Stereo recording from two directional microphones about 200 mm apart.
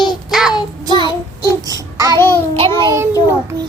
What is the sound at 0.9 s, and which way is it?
Child singing, 20° right (ahead or behind).